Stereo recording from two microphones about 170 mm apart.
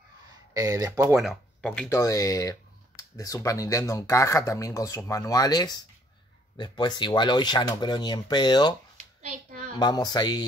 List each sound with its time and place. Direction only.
0.6 s speech: 20° right (ahead or behind)
1.1 s speech: centre (ahead or behind)
1.9 s speech: 20° left (ahead or behind)
8.9 s hands: 45° right (ahead or behind)
9.8 s speech: 25° left (ahead or behind)